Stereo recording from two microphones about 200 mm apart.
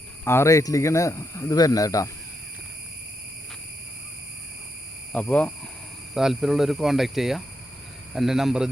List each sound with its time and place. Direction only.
0.3 s speech: 15° left (ahead or behind)
5.1 s speech: 5° left (ahead or behind)